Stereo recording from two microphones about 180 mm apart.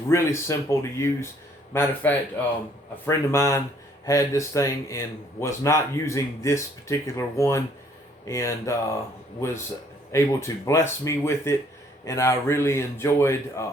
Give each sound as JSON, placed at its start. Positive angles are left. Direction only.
{"t": 0.1, "sound": "speech", "side_deg": 15}
{"t": 10.1, "sound": "speech", "side_deg": 15}